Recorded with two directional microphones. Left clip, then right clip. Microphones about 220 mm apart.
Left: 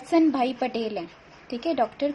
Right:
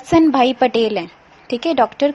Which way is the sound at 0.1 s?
30° right (ahead or behind).